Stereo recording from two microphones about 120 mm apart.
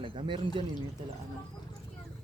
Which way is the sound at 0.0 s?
45° right (ahead or behind).